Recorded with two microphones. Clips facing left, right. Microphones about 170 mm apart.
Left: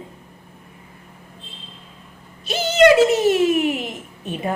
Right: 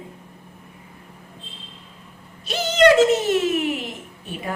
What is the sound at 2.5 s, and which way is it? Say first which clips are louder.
Music: left 2 dB; 5° left (ahead or behind).